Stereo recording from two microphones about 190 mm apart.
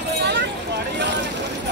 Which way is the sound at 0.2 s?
65° right (ahead or behind).